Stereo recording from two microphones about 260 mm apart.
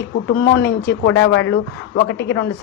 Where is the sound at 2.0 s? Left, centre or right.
Left.